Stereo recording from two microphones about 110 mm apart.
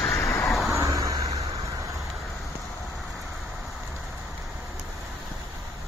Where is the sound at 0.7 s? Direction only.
30° right (ahead or behind).